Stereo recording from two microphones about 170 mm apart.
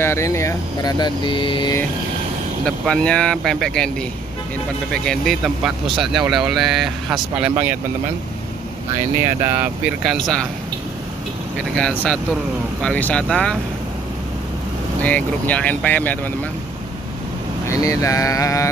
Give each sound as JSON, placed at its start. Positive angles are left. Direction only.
{"t": 0.0, "sound": "speech", "side_deg": 15}
{"t": 2.6, "sound": "speech", "side_deg": 5}
{"t": 4.9, "sound": "speech", "side_deg": 5}
{"t": 9.4, "sound": "speech", "side_deg": -10}
{"t": 11.7, "sound": "speech", "side_deg": 5}
{"t": 15.0, "sound": "speech", "side_deg": 10}
{"t": 17.6, "sound": "speech", "side_deg": 20}